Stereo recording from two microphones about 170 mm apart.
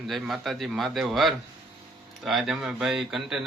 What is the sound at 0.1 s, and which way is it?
A man's voice, centre (ahead or behind).